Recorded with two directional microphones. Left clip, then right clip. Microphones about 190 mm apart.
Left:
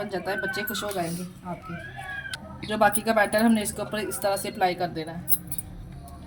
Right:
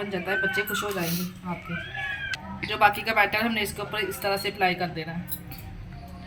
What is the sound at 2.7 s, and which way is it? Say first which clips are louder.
Speech: even; 60° left (ahead or behind).